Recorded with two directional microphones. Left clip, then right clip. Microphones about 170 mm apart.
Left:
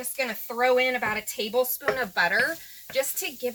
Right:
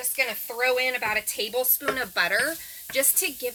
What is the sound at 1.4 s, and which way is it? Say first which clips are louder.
Speech: left 2 dB; 20° right (ahead or behind).